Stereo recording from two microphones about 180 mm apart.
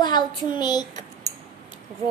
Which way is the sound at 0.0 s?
25° left (ahead or behind).